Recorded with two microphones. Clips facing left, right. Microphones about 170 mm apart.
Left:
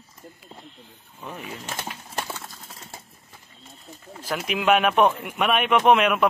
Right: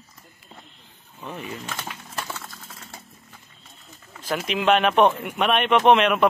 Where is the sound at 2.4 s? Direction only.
30° left (ahead or behind).